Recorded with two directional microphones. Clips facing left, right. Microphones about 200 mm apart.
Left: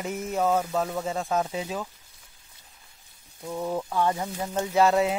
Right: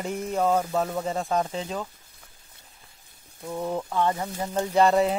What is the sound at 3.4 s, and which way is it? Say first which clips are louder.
Speech: even; centre (ahead or behind).